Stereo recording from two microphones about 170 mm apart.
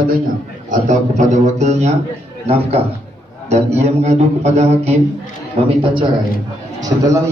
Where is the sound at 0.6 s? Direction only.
45° right (ahead or behind).